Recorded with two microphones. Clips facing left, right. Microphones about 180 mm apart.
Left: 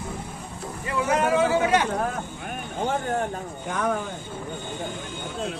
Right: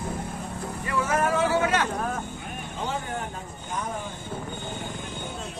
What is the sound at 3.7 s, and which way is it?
Speech, 75° left (ahead or behind).